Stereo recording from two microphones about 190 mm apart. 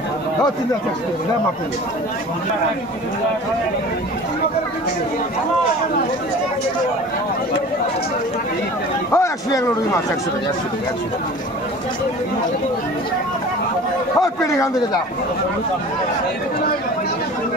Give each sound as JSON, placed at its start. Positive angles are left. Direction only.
{"t": 9.1, "sound": "a man's voice", "side_deg": 15}
{"t": 14.2, "sound": "a man's voice", "side_deg": 15}